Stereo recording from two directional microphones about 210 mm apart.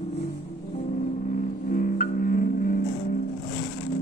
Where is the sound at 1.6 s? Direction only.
40° left (ahead or behind).